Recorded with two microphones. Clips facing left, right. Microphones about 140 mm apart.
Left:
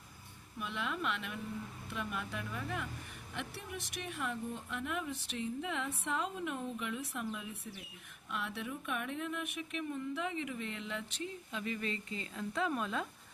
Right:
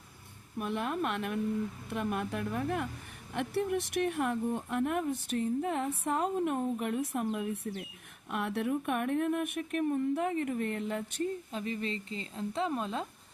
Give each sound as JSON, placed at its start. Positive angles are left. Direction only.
{"t": 0.6, "sound": "speech", "side_deg": -50}
{"t": 11.6, "sound": "speech", "side_deg": -30}